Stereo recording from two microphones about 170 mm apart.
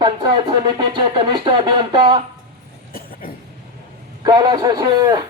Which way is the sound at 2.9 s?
60° left (ahead or behind).